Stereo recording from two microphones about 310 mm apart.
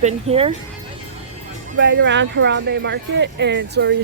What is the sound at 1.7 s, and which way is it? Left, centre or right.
Speech, right.